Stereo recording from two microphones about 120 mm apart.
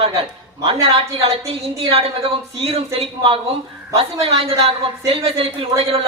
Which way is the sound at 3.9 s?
55° right (ahead or behind).